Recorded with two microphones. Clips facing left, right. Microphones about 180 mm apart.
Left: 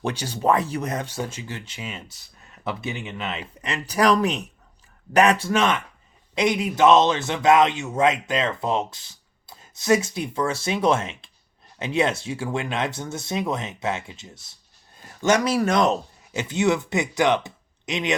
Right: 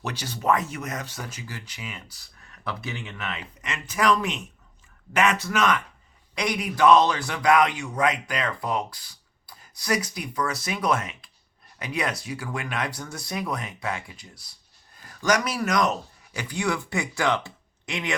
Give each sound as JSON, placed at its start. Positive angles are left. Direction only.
{"t": 0.0, "sound": "a man's voice", "side_deg": 30}